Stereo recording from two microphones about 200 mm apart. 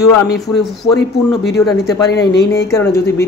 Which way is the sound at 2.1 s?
55° left (ahead or behind).